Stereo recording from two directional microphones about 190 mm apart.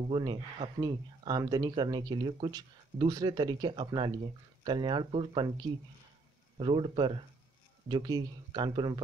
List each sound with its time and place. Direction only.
0.1 s speech: 25° right (ahead or behind)
6.6 s speech: 25° right (ahead or behind)